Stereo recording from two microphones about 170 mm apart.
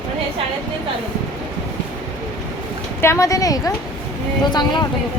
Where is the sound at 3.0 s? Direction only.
15° left (ahead or behind).